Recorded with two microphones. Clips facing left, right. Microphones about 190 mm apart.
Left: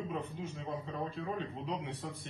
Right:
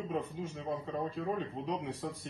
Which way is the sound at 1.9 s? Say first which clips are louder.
Right 3 dB; 35° right (ahead or behind).